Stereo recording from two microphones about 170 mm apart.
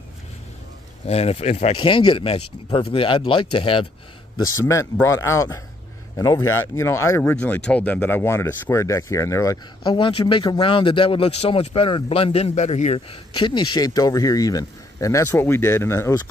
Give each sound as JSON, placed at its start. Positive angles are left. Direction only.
{"t": 1.0, "sound": "speech", "side_deg": 35}
{"t": 5.0, "sound": "speech", "side_deg": 15}